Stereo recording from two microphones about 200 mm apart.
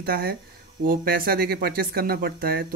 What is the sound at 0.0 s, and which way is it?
Speech, 50° right (ahead or behind).